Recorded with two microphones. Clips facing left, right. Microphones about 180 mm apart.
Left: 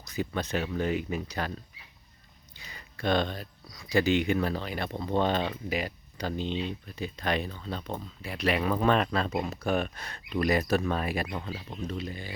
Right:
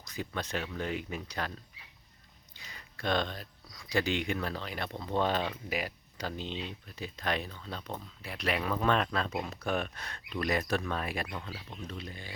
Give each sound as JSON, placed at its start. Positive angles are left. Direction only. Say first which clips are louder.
{"t": 0.0, "sound": "speech", "louder": "left 6 dB", "side_deg": 5}
{"t": 11.3, "sound": "speech", "louder": "left 5 dB", "side_deg": 25}
{"t": 11.9, "sound": "speech", "louder": "left 8 dB", "side_deg": 5}